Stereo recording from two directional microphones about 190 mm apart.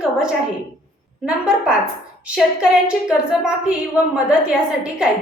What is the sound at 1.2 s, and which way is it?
A woman's voice, 5° right (ahead or behind).